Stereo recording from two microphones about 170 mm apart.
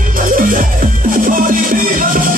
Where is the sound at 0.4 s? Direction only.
50° right (ahead or behind).